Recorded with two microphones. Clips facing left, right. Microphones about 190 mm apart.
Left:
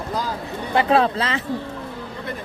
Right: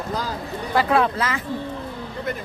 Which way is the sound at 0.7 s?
25° left (ahead or behind).